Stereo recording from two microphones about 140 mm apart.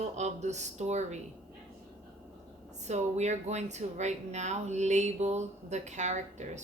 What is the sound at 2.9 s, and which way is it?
Speech, 55° right (ahead or behind).